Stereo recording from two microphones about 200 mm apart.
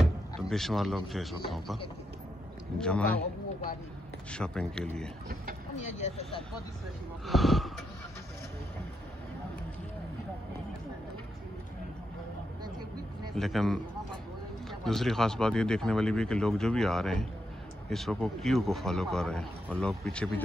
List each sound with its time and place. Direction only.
0.0 s speech: centre (ahead or behind)
2.8 s a man's voice: 5° left (ahead or behind)
4.3 s a man's voice: 5° left (ahead or behind)
6.0 s speech: 30° left (ahead or behind)
7.2 s a man's voice: centre (ahead or behind)
13.3 s a man's voice: centre (ahead or behind)